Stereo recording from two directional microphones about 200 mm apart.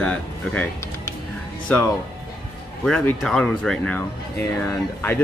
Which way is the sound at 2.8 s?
5° left (ahead or behind).